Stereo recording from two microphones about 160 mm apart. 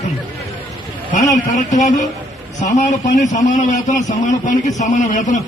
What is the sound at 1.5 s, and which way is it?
A man's voice, 50° left (ahead or behind).